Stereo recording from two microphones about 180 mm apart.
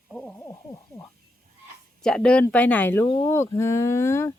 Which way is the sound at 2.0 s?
5° left (ahead or behind).